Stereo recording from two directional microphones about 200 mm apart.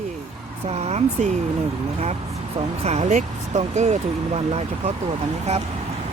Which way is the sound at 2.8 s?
35° right (ahead or behind).